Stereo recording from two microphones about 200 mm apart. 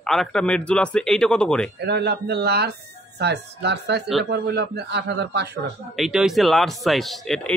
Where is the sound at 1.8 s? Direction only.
55° right (ahead or behind).